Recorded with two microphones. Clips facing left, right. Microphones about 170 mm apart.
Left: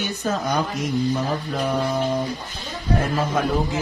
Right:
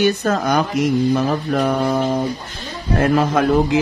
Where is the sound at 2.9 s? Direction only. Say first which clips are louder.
Right 8 dB; 80° right.